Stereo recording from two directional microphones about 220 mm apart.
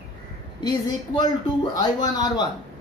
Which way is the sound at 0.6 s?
20° left (ahead or behind).